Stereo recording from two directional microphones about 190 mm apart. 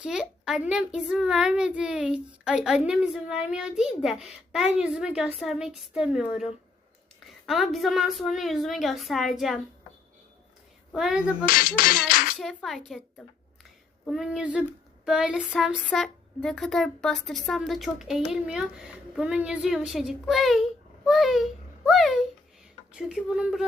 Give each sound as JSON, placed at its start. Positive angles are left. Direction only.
{"t": 0.0, "sound": "a child's voice", "side_deg": -5}
{"t": 10.9, "sound": "a child's voice", "side_deg": -5}
{"t": 11.4, "sound": "music", "side_deg": 50}
{"t": 12.4, "sound": "a child's voice", "side_deg": 0}